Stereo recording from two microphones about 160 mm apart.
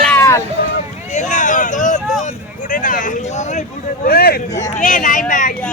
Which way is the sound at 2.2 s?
50° left (ahead or behind).